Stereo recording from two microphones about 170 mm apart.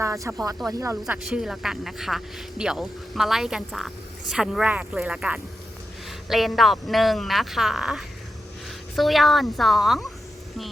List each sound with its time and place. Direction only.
0.0 s speech: 15° right (ahead or behind)
1.0 s speech: 5° right (ahead or behind)